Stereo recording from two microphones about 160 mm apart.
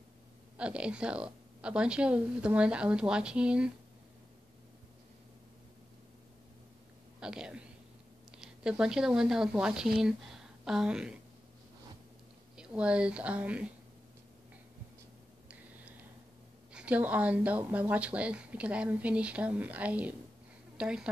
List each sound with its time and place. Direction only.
0.6 s a woman's voice: 5° right (ahead or behind)
7.2 s a sound: 5° right (ahead or behind)
8.4 s speech: 5° right (ahead or behind)
12.5 s a woman's voice: 5° right (ahead or behind)
16.7 s a woman's voice: 10° right (ahead or behind)